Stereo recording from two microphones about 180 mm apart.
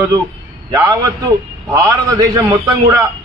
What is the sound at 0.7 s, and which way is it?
A man's voice, 20° right (ahead or behind).